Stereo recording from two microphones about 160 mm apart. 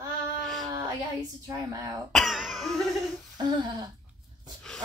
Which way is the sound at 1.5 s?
20° right (ahead or behind).